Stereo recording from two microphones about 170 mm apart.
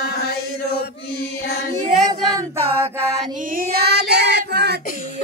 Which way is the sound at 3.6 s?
65° right (ahead or behind).